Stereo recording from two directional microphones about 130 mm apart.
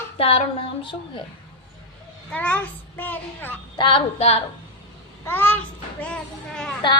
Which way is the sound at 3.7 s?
40° left (ahead or behind).